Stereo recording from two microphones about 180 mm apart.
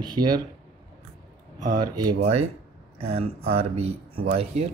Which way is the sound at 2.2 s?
35° right (ahead or behind).